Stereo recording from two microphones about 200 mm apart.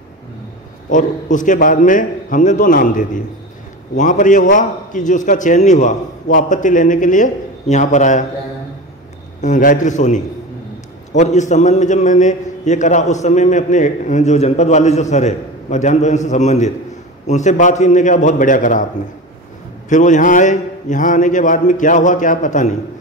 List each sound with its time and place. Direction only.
0.8 s a man's voice: 40° left (ahead or behind)
9.4 s a man's voice: 40° left (ahead or behind)
19.9 s a man's voice: 40° left (ahead or behind)